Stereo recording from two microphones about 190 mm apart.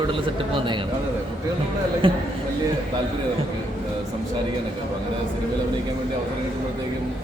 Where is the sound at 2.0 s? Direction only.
30° right (ahead or behind).